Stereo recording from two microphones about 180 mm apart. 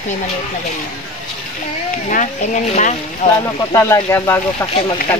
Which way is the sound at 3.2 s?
45° left (ahead or behind).